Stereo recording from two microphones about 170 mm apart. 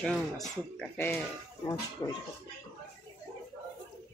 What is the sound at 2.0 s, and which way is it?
Speech, 25° left (ahead or behind).